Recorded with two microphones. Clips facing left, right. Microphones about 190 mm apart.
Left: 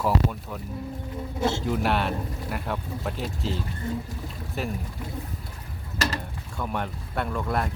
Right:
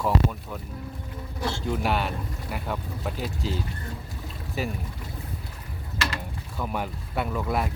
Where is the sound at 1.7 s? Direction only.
Centre (ahead or behind).